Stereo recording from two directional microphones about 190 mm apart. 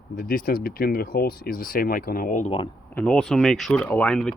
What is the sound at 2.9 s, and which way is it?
Speech, 5° left (ahead or behind).